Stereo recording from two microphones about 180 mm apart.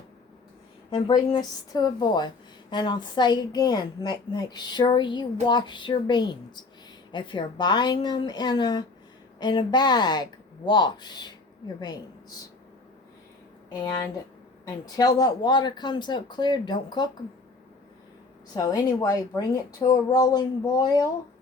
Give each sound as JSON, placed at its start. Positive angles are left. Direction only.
{"t": 0.9, "sound": "a woman's voice", "side_deg": 25}
{"t": 13.7, "sound": "a woman's voice", "side_deg": 20}
{"t": 18.5, "sound": "a woman's voice", "side_deg": 20}